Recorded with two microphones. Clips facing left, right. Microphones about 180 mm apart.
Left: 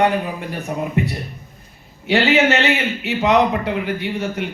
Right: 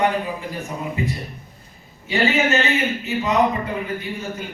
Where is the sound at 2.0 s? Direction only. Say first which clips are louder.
Left 4 dB; 75° left (ahead or behind).